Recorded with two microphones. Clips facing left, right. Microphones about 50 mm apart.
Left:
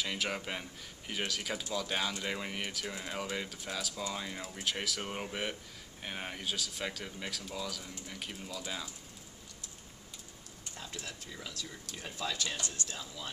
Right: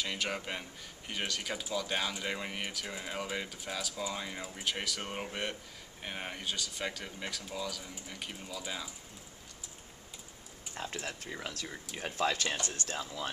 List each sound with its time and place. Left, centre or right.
0.0 s speech: centre
10.7 s a sound: right
11.1 s speech: right